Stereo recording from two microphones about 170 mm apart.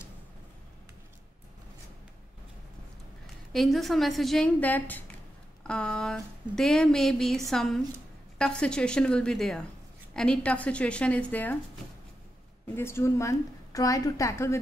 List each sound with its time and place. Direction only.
3.5 s a sound: centre (ahead or behind)
10.1 s a woman's voice: 5° left (ahead or behind)
12.6 s a woman's voice: 15° left (ahead or behind)